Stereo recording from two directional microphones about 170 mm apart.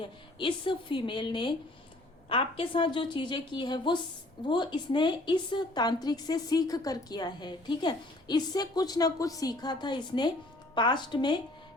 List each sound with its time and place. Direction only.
0.0 s a woman's voice: 30° left (ahead or behind)